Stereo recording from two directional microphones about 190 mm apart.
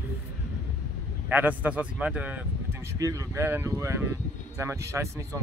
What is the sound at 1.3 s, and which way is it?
Speech, 10° right (ahead or behind).